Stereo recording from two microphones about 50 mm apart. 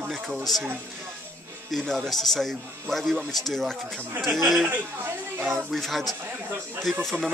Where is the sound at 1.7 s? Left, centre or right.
Centre.